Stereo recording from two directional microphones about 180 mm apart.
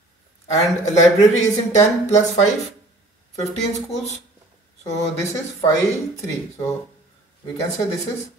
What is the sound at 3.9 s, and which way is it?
Speech, 40° left (ahead or behind).